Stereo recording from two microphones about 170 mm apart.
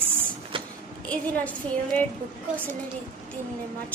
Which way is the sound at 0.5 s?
30° right (ahead or behind).